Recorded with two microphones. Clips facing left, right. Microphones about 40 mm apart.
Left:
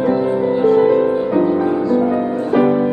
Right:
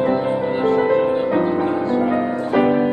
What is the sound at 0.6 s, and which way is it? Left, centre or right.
Music, right.